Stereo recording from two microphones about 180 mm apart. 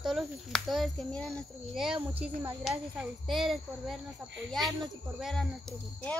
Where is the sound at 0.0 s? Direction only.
Centre (ahead or behind).